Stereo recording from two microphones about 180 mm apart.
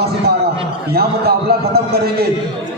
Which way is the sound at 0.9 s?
60° right (ahead or behind).